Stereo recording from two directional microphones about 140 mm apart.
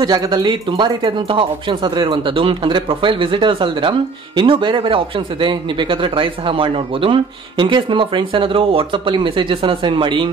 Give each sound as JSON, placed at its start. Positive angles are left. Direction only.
{"t": 0.0, "sound": "speech", "side_deg": -25}